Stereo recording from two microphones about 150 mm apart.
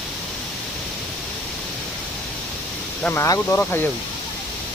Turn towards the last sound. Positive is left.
turn(degrees=15)  # may be behind; listen again after turning